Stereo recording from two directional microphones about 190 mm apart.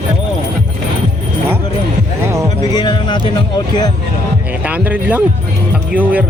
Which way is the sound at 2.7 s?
25° left (ahead or behind).